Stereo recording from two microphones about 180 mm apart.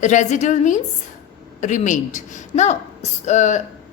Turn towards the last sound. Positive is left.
turn(degrees=40)  # may be behind; listen again after turning